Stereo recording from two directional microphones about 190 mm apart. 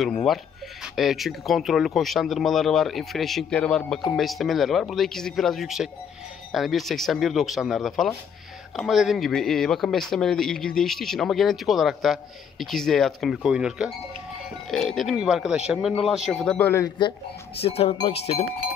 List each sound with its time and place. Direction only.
0.0 s a man's voice: centre (ahead or behind)
17.6 s speech: 30° left (ahead or behind)